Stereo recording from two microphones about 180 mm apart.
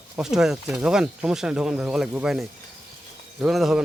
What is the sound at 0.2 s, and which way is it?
Speech, 5° right (ahead or behind).